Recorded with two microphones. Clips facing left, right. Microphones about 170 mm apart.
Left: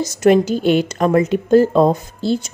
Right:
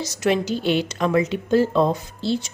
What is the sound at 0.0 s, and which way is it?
A woman's voice, 50° left (ahead or behind).